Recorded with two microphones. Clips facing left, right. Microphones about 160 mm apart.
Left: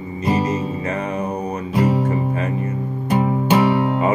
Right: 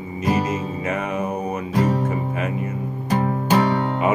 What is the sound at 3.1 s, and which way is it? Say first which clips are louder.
Music: left 2 dB; 10° left (ahead or behind).